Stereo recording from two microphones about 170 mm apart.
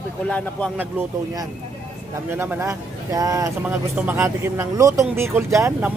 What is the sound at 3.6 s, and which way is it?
Speech, 10° right (ahead or behind).